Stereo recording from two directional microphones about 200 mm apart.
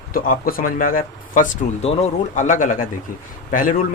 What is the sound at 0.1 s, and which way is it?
Speech, 45° left (ahead or behind).